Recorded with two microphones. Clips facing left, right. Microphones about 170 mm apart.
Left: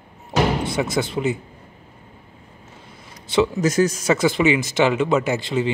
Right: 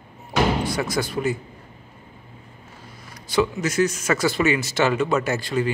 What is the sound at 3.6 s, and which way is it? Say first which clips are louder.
Speech: left 3 dB; 40° left (ahead or behind).